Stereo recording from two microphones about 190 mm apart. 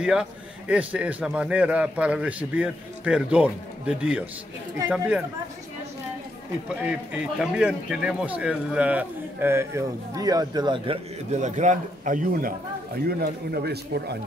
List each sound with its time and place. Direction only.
0.0 s speech: 5° right (ahead or behind)
6.7 s speech: 5° right (ahead or behind); by 11.0 s 25° right (ahead or behind)
11.3 s speech: 40° right (ahead or behind)
13.0 s speech: 55° right (ahead or behind)